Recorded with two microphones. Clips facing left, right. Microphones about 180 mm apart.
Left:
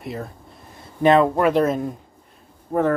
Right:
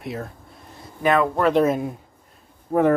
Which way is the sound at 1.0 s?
25° left (ahead or behind).